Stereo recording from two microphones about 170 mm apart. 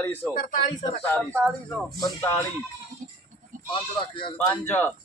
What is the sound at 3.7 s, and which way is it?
Speech, 30° left (ahead or behind).